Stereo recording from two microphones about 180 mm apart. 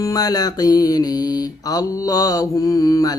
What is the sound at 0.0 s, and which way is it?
Mantra, 20° left (ahead or behind).